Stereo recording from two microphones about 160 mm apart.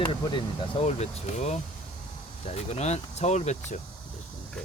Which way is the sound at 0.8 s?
45° left (ahead or behind).